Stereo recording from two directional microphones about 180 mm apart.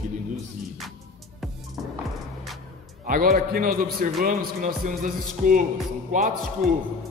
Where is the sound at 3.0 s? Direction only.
50° right (ahead or behind).